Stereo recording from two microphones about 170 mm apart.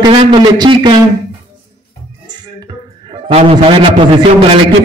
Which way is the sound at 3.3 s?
35° right (ahead or behind).